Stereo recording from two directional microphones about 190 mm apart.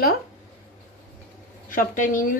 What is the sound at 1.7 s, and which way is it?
Speech, 45° left (ahead or behind).